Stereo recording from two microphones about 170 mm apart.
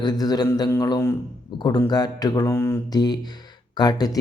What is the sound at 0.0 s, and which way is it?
A man's voice, 25° left (ahead or behind).